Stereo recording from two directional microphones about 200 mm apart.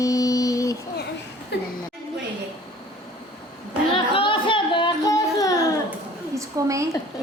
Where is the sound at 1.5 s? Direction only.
60° left (ahead or behind).